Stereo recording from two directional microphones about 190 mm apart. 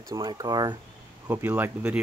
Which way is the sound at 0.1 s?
20° right (ahead or behind).